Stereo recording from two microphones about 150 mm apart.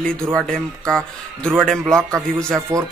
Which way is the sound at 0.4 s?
5° left (ahead or behind).